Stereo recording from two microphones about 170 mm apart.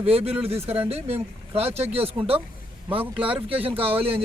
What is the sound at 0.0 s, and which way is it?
Speech, 35° right (ahead or behind).